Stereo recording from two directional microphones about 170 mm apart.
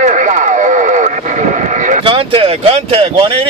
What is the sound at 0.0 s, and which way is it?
Radio, 45° right (ahead or behind).